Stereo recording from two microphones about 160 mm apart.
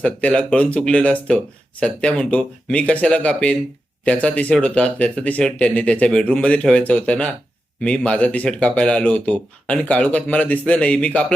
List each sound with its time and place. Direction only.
0.0 s speech: 5° left (ahead or behind)